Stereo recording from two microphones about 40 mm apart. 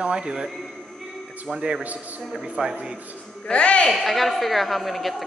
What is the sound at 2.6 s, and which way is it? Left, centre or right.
Speech, right.